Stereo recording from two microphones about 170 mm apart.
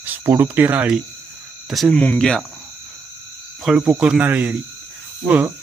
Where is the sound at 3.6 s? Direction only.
5° right (ahead or behind).